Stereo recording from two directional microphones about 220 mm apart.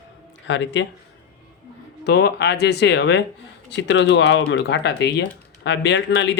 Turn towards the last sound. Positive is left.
turn(degrees=55)  # may be behind; listen again after turning